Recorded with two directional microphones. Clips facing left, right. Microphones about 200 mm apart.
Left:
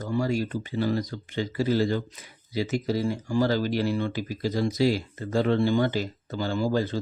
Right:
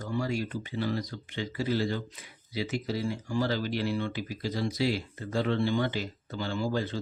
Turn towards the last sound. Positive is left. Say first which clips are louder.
# left 5 dB
turn(degrees=40)  # may be behind; listen again after turning